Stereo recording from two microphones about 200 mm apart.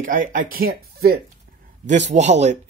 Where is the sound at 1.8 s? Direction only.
35° right (ahead or behind).